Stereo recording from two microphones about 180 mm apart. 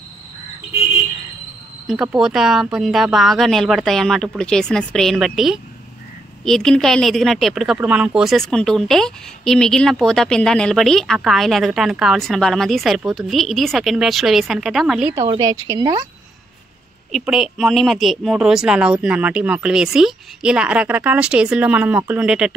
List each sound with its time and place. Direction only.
1.9 s a woman's voice: 5° right (ahead or behind)
15.2 s a woman's voice: 20° right (ahead or behind)
17.1 s a woman's voice: centre (ahead or behind)